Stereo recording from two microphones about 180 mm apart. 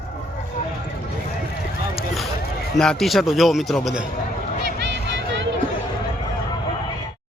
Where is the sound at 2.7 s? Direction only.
5° left (ahead or behind).